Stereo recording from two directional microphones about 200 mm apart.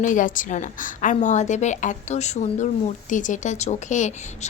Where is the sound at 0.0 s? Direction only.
40° left (ahead or behind).